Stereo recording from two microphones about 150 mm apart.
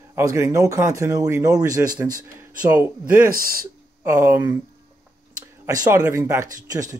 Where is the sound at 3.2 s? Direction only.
75° right (ahead or behind).